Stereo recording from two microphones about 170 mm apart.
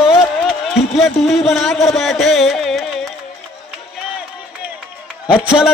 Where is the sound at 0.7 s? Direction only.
Centre (ahead or behind).